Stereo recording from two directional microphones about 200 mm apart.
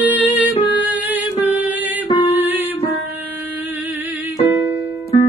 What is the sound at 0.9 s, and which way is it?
Music, 10° right (ahead or behind).